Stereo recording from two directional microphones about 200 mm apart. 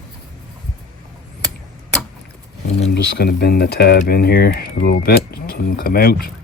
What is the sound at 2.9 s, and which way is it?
Speech, 55° left (ahead or behind).